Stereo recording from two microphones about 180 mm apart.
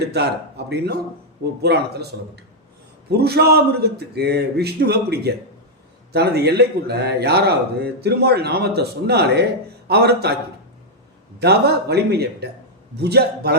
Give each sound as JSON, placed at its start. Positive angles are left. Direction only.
{"t": 0.0, "sound": "a man's voice", "side_deg": -65}
{"t": 11.3, "sound": "a man's voice", "side_deg": -65}